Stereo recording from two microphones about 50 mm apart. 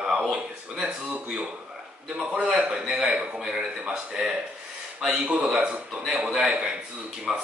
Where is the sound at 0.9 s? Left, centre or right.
Right.